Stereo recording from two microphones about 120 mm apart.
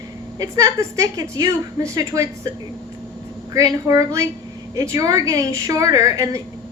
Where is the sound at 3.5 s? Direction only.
30° right (ahead or behind).